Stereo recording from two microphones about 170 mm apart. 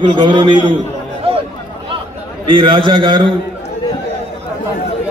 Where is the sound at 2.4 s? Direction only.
30° right (ahead or behind).